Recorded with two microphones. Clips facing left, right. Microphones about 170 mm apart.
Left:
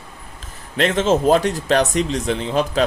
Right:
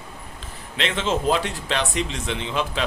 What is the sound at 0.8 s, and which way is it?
Speech, 45° left (ahead or behind).